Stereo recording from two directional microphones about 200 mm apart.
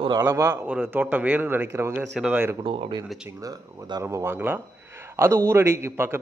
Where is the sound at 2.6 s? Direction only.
25° right (ahead or behind).